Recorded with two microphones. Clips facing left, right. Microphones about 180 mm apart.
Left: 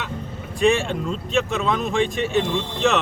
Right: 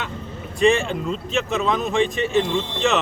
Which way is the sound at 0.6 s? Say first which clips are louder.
Right 1 dB; centre (ahead or behind).